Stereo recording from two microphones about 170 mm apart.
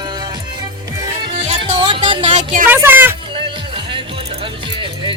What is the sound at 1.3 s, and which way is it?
Music, 40° right (ahead or behind).